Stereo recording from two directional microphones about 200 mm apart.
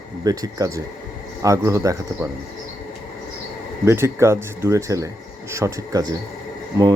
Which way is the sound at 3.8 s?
15° right (ahead or behind).